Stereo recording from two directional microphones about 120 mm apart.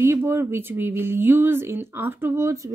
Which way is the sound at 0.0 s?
20° right (ahead or behind).